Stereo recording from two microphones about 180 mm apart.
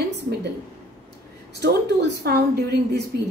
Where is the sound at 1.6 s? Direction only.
65° right (ahead or behind).